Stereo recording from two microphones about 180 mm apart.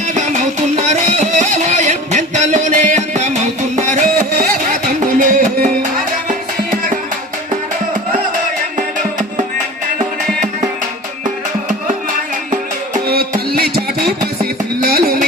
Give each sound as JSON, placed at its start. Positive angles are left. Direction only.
{"t": 0.8, "sound": "music", "side_deg": -35}
{"t": 12.5, "sound": "music", "side_deg": -50}
{"t": 14.8, "sound": "music", "side_deg": -55}